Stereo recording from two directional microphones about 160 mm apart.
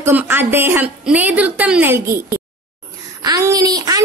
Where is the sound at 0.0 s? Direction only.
10° right (ahead or behind).